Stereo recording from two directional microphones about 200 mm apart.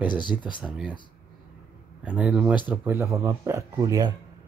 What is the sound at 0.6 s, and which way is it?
Speech, 5° right (ahead or behind).